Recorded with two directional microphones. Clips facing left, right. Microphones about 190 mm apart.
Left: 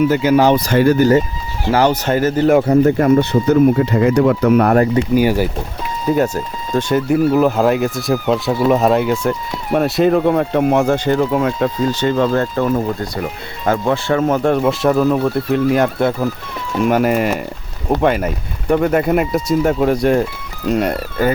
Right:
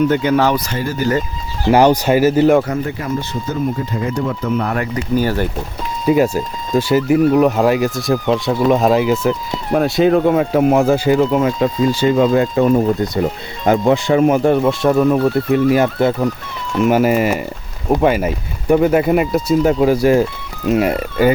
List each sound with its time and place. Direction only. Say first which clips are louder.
0.0 s speech: left 1 dB; 5° left (ahead or behind)
0.7 s speech: left 9 dB; 60° left (ahead or behind)
1.7 s speech: right 3 dB; 15° right (ahead or behind)
2.8 s speech: left 10 dB; 55° left (ahead or behind)
5.1 s speech: even; 10° left (ahead or behind)
6.1 s speech: right 2 dB; 10° right (ahead or behind)